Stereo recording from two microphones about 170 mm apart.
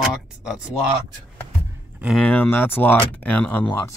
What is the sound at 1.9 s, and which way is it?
Speech, 5° right (ahead or behind).